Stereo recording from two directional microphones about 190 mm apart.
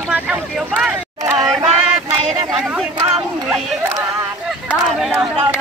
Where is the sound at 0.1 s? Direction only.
5° right (ahead or behind).